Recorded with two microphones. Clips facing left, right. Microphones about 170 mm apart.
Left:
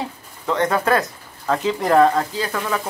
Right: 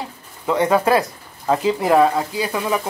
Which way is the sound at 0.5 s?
10° right (ahead or behind).